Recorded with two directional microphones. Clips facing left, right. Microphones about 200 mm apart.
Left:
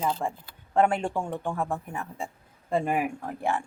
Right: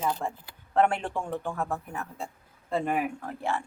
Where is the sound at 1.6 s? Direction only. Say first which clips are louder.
Left 1 dB; 10° left (ahead or behind).